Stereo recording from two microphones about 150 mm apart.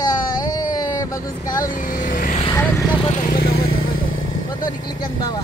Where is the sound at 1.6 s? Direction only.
60° left (ahead or behind).